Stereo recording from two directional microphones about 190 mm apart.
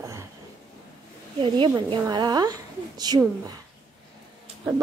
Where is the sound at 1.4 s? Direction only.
25° right (ahead or behind).